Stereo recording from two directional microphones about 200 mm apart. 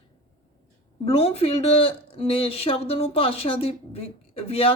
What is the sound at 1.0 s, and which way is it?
Speech, 30° left (ahead or behind).